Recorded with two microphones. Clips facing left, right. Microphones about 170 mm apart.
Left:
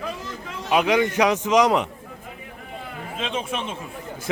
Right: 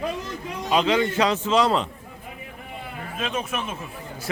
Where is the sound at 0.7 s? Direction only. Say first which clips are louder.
Left 1 dB; 15° left (ahead or behind).